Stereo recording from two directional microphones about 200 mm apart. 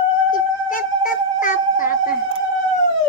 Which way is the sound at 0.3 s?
40° left (ahead or behind).